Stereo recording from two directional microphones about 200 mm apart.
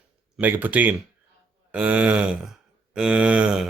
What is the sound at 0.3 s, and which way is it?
Speech, 10° right (ahead or behind).